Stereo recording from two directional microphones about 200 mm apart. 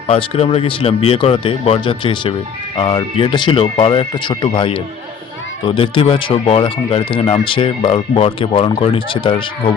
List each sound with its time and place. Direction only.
0.1 s speech: 30° left (ahead or behind)